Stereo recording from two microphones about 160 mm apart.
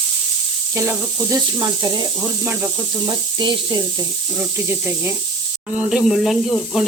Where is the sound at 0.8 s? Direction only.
20° right (ahead or behind).